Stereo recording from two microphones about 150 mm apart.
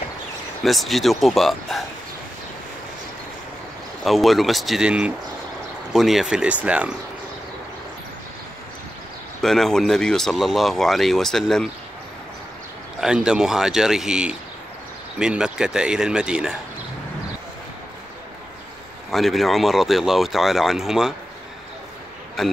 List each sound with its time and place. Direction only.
0.7 s speech: centre (ahead or behind)
4.0 s speech: centre (ahead or behind)
9.4 s speech: 5° left (ahead or behind)
13.0 s speech: 5° right (ahead or behind)
19.0 s speech: centre (ahead or behind)